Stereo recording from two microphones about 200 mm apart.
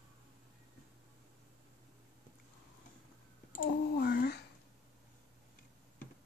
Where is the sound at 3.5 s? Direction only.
50° left (ahead or behind).